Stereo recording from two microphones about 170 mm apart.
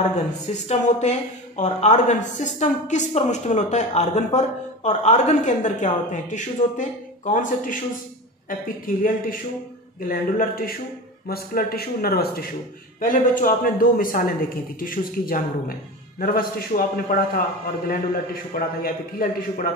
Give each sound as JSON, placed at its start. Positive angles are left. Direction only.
{"t": 0.5, "sound": "a man's voice", "side_deg": 45}
{"t": 13.0, "sound": "a man's voice", "side_deg": 50}